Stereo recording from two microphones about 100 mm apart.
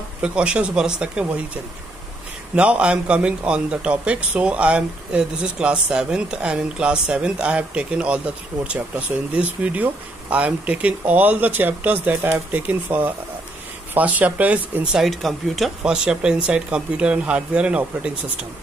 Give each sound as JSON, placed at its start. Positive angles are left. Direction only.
{"t": 0.2, "sound": "a man's voice", "side_deg": -10}
{"t": 2.5, "sound": "a man's voice", "side_deg": -10}
{"t": 9.3, "sound": "a man's voice", "side_deg": -15}